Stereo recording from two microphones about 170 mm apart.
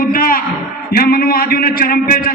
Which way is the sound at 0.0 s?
55° left (ahead or behind).